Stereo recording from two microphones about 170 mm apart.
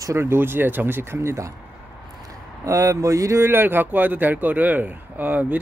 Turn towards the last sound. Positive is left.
turn(degrees=-10)  # may be behind; listen again after turning